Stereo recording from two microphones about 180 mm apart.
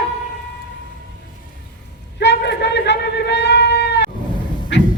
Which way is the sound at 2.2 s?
70° left (ahead or behind).